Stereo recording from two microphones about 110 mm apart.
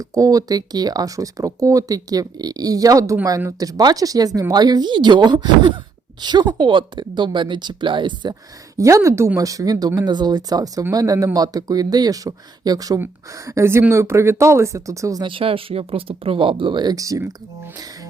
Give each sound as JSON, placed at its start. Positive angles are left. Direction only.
{"t": 0.0, "sound": "speech", "side_deg": -30}
{"t": 8.7, "sound": "speech", "side_deg": -30}
{"t": 15.2, "sound": "speech", "side_deg": -55}